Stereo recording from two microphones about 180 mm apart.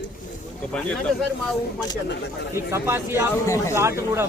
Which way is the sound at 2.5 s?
15° right (ahead or behind).